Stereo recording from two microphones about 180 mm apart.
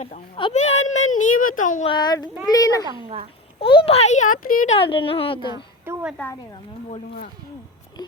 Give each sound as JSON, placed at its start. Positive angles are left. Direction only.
{"t": 0.5, "sound": "speech", "side_deg": 40}
{"t": 1.9, "sound": "speech", "side_deg": 20}
{"t": 4.8, "sound": "speech", "side_deg": 30}
{"t": 5.8, "sound": "a sound", "side_deg": -10}